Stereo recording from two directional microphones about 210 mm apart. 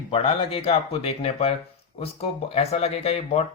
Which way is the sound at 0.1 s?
25° left (ahead or behind).